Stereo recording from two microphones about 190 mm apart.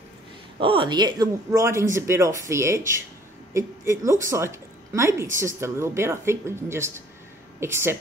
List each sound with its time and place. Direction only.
0.6 s a woman's voice: 25° right (ahead or behind)